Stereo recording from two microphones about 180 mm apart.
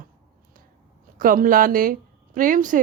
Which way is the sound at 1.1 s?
50° right (ahead or behind).